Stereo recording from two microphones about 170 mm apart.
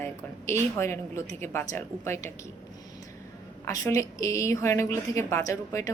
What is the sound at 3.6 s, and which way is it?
A woman's voice, 20° left (ahead or behind).